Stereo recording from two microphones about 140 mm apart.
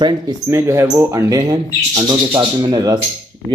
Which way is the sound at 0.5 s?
20° right (ahead or behind).